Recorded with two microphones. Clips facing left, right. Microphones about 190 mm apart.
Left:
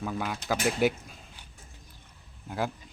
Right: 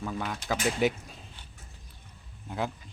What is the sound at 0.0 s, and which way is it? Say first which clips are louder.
Speech: left 1 dB; 5° left (ahead or behind).